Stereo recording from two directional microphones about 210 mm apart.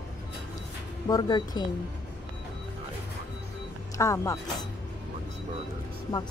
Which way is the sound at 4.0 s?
15° left (ahead or behind).